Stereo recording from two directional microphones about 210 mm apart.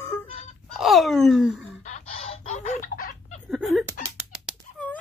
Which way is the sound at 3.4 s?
Centre (ahead or behind).